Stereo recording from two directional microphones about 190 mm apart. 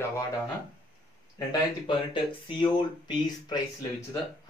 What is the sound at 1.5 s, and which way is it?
Speech, 25° left (ahead or behind).